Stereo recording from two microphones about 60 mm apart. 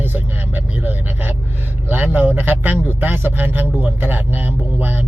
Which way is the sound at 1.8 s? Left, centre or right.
Right.